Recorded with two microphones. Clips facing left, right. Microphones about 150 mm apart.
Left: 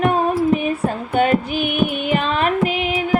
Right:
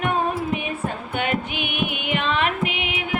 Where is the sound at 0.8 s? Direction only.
40° left (ahead or behind).